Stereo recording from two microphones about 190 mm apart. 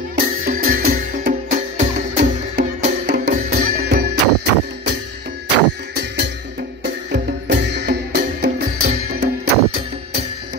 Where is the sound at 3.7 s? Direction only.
55° right (ahead or behind).